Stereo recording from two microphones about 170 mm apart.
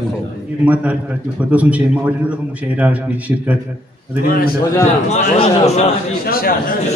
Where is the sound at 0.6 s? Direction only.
10° right (ahead or behind).